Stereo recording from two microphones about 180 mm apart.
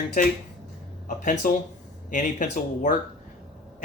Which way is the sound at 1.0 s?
45° left (ahead or behind).